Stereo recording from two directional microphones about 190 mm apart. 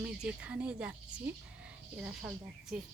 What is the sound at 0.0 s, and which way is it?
Speech, 5° right (ahead or behind).